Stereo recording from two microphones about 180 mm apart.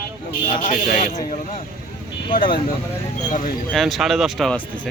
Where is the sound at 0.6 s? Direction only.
40° left (ahead or behind).